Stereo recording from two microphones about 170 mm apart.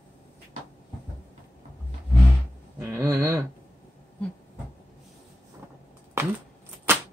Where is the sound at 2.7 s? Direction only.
15° right (ahead or behind).